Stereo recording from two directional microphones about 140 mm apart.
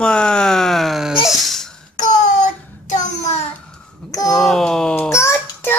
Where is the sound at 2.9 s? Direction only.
55° left (ahead or behind).